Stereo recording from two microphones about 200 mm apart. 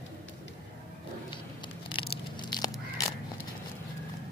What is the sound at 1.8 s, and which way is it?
Biting, 25° left (ahead or behind).